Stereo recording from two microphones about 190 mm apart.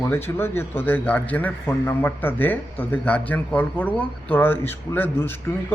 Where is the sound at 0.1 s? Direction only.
10° left (ahead or behind).